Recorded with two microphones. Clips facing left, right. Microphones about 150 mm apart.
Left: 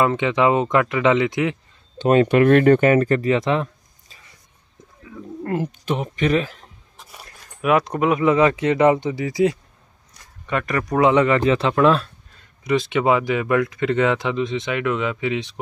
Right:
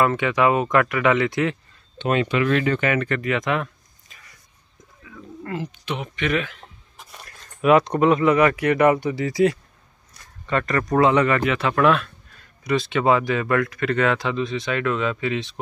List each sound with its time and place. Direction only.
0.0 s speech: 20° left (ahead or behind)
2.0 s speech: 40° left (ahead or behind)
2.2 s speech: 55° left (ahead or behind); by 3.6 s 30° left (ahead or behind)
4.1 s a sound: 30° left (ahead or behind)
5.4 s speech: 45° left (ahead or behind)
7.0 s a sound: 5° left (ahead or behind)
7.6 s speech: 5° left (ahead or behind)
8.2 s speech: 20° left (ahead or behind)
12.6 s speech: 20° left (ahead or behind)